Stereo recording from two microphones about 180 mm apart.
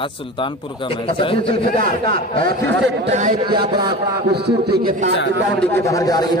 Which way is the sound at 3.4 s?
25° right (ahead or behind).